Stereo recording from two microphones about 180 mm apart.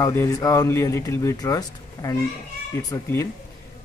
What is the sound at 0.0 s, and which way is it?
Speech, 15° left (ahead or behind).